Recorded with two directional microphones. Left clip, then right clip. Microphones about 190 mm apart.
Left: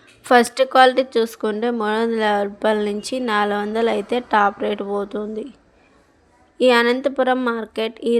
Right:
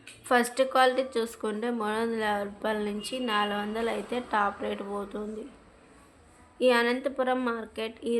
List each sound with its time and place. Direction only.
0.3 s speech: 40° left (ahead or behind)
6.6 s speech: 40° left (ahead or behind)